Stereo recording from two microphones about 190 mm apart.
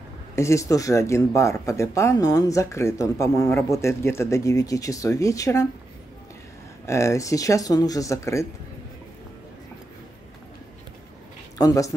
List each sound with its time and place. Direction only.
0.4 s speech: 15° left (ahead or behind)
6.9 s speech: 15° left (ahead or behind)
11.5 s speech: 20° left (ahead or behind)